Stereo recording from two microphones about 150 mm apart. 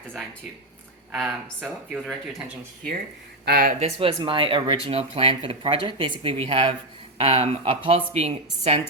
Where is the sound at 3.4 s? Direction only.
85° right.